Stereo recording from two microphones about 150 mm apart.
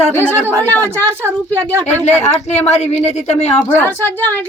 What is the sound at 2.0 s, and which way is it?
Speech, 50° left (ahead or behind).